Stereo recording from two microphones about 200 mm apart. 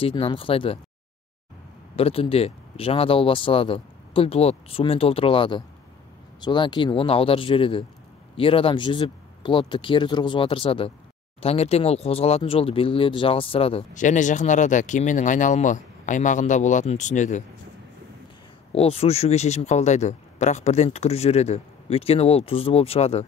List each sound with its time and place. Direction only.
0.0 s speech: 25° left (ahead or behind)
2.0 s speech: 30° left (ahead or behind)
18.7 s speech: 30° left (ahead or behind)